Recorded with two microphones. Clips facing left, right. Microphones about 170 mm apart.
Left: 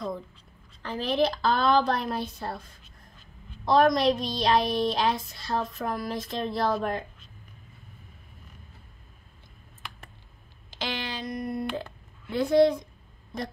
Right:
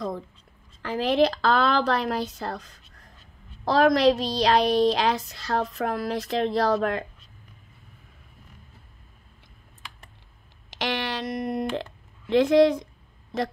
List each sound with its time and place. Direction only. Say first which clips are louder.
0.8 s speech: right 4 dB; 90° right
3.7 s a woman's voice: right 2 dB; 85° right
10.7 s a sound: right 5 dB; 80° right